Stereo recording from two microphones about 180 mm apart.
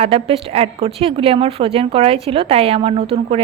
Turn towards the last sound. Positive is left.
turn(degrees=-30)  # may be behind; listen again after turning